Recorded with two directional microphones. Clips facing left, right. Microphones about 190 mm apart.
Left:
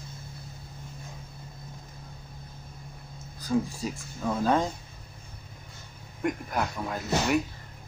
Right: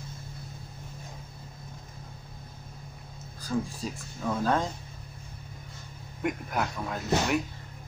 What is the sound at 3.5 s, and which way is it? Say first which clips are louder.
Speech: left 3 dB; 10° left (ahead or behind).